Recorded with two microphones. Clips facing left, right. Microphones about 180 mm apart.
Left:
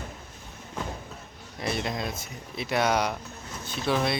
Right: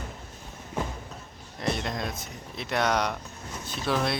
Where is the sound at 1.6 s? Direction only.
5° left (ahead or behind).